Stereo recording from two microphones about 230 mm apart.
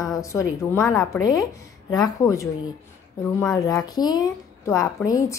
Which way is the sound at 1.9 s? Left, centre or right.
Centre.